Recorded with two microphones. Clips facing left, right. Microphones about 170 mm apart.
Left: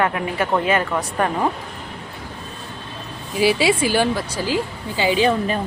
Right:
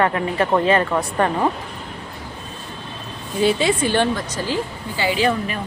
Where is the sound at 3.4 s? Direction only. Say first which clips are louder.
Left 1 dB; 10° left (ahead or behind).